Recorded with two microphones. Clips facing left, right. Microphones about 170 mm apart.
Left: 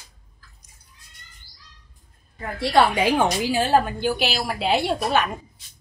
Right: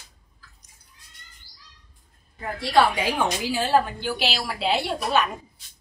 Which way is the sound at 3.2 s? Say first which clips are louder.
Left 4 dB; 45° left (ahead or behind).